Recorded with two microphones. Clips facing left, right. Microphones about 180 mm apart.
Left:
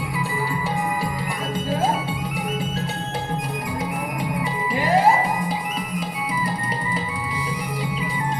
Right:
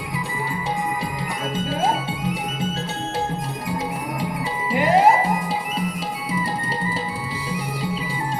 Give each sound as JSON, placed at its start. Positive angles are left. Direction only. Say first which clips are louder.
{"t": 4.7, "sound": "music", "louder": "right 3 dB", "side_deg": -20}